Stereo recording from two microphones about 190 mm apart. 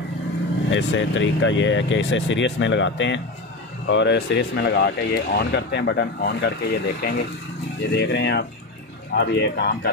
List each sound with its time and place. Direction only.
0.7 s speech: 70° left (ahead or behind)